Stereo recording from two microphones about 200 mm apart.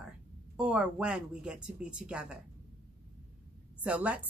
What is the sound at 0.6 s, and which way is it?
A woman's voice, 5° right (ahead or behind).